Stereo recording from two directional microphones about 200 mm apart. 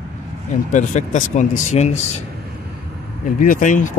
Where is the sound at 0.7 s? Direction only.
35° left (ahead or behind).